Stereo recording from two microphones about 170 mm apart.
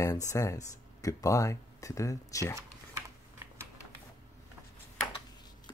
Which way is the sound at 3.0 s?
15° right (ahead or behind).